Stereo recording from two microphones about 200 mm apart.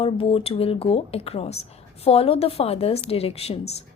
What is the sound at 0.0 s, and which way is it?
A woman's voice, 30° left (ahead or behind).